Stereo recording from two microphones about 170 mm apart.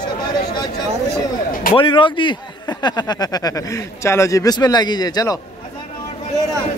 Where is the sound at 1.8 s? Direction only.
30° left (ahead or behind).